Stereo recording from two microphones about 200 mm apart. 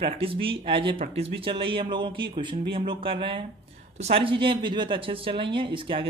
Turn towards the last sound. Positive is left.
turn(degrees=-25)  # may be behind; listen again after turning